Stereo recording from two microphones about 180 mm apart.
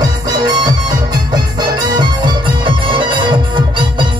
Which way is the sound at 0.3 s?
25° right (ahead or behind).